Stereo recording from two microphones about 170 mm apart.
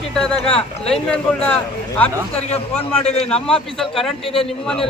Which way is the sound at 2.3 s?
35° left (ahead or behind).